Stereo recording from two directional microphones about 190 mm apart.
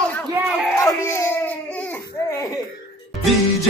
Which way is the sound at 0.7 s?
15° left (ahead or behind).